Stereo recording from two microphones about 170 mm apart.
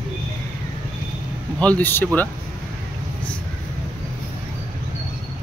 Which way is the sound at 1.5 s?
10° left (ahead or behind).